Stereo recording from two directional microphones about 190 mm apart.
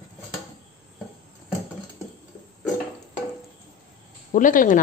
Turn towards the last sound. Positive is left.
turn(degrees=45)  # may be behind; listen again after turning